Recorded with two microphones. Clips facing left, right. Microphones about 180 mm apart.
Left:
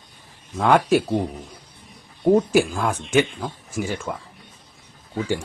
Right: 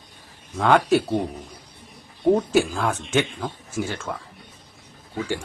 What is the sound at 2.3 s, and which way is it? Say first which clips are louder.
Speech: left 3 dB; 10° left (ahead or behind).